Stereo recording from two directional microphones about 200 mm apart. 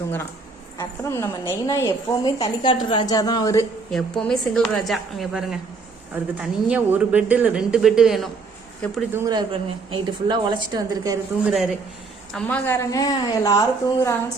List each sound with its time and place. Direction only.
0.8 s a woman's voice: 15° left (ahead or behind)
3.9 s speech: centre (ahead or behind)
9.1 s speech: 15° right (ahead or behind)
9.5 s a woman's voice: 25° right (ahead or behind)
11.4 s a woman's voice: centre (ahead or behind); by 14.2 s 15° left (ahead or behind)